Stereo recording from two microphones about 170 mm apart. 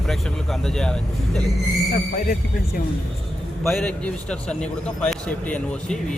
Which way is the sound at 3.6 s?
Centre (ahead or behind).